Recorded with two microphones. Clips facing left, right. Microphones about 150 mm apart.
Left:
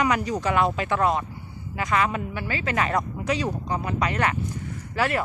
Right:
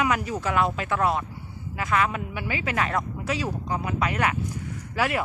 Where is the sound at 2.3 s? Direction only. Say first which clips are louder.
Left 1 dB; 15° right (ahead or behind).